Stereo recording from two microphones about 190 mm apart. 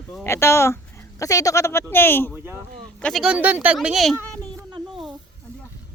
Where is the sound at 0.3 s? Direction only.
15° left (ahead or behind).